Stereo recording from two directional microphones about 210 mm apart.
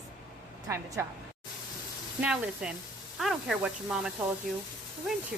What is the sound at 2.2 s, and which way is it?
Speech, 5° right (ahead or behind).